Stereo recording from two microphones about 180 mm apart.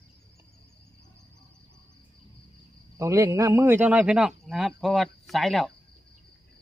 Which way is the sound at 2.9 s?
15° right (ahead or behind).